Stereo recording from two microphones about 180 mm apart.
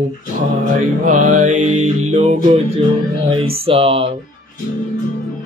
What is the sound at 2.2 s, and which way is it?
A woman's voice, 25° right (ahead or behind).